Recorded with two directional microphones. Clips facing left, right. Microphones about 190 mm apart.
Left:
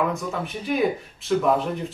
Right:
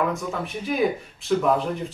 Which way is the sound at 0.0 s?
Centre (ahead or behind).